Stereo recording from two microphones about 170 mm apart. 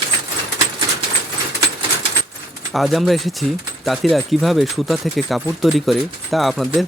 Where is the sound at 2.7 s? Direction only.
Centre (ahead or behind).